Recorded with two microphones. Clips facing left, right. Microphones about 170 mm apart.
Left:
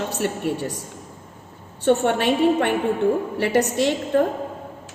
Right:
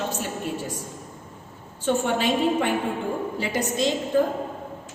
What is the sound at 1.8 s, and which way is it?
A woman's voice, 65° left (ahead or behind).